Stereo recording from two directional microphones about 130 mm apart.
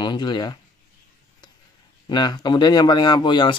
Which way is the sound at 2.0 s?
35° left (ahead or behind).